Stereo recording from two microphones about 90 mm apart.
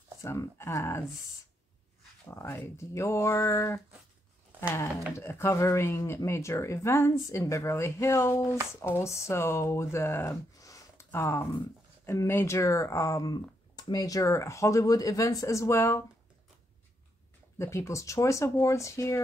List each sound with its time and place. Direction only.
0.2 s speech: 35° left (ahead or behind)
2.2 s speech: 30° left (ahead or behind)
5.1 s speech: 30° left (ahead or behind)
10.6 s a sound: 35° left (ahead or behind)
11.1 s speech: 30° left (ahead or behind)
17.6 s speech: 30° left (ahead or behind)